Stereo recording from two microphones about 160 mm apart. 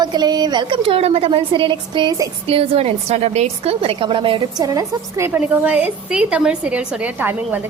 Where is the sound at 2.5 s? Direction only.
40° right (ahead or behind).